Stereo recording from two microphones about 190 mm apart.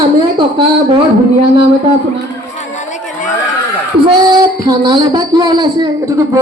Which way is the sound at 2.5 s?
40° left (ahead or behind).